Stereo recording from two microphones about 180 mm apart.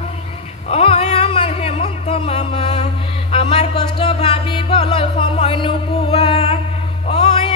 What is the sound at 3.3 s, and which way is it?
Music, 30° left (ahead or behind).